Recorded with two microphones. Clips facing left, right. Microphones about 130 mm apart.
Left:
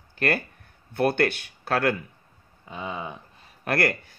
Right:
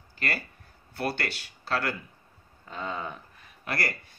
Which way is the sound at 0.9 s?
55° left (ahead or behind).